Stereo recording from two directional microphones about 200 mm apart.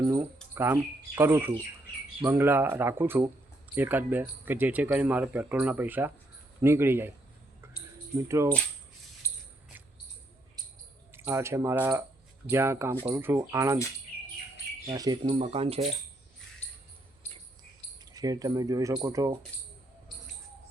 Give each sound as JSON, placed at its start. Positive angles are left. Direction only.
{"t": 0.0, "sound": "a sound", "side_deg": -15}
{"t": 0.5, "sound": "speech", "side_deg": -10}
{"t": 7.6, "sound": "mouse", "side_deg": -10}
{"t": 8.3, "sound": "speech", "side_deg": -15}
{"t": 9.2, "sound": "a sound", "side_deg": 15}
{"t": 11.1, "sound": "speech", "side_deg": -15}
{"t": 14.8, "sound": "speech", "side_deg": -20}
{"t": 18.0, "sound": "speech", "side_deg": -20}